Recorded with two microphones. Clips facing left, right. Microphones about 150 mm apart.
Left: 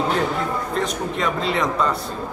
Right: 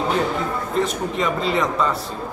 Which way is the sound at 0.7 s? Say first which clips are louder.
Right 4 dB; centre (ahead or behind).